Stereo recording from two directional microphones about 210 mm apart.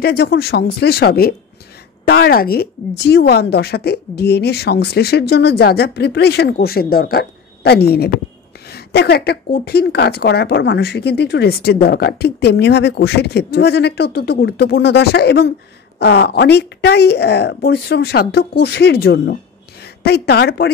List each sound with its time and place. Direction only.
0.0 s a woman's voice: 50° left (ahead or behind)